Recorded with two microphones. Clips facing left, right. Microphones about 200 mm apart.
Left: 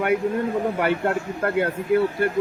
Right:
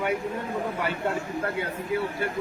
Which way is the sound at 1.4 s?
60° left (ahead or behind).